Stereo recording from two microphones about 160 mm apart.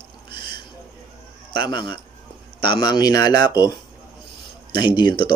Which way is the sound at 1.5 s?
30° left (ahead or behind).